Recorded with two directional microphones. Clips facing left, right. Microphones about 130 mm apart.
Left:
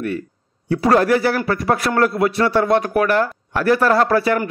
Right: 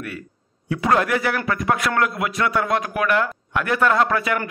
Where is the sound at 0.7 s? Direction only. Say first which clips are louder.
Left 5 dB; 35° left (ahead or behind).